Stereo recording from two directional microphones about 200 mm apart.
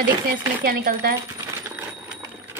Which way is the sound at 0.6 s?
50° right (ahead or behind).